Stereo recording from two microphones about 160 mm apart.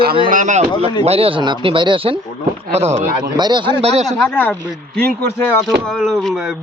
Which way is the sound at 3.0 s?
25° right (ahead or behind).